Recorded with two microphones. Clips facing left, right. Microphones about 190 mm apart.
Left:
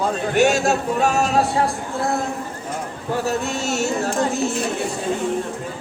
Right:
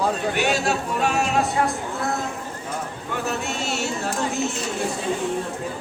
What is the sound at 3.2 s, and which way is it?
Speech, 45° left (ahead or behind).